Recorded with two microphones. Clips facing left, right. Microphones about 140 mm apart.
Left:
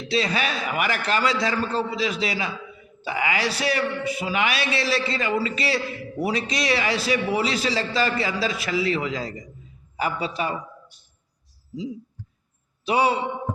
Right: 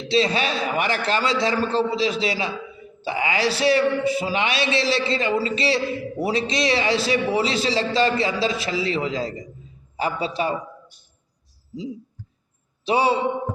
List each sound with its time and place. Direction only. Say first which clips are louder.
0.1 s a man's voice: right 4 dB; 25° right (ahead or behind)
12.8 s a man's voice: right 1 dB; 30° right (ahead or behind)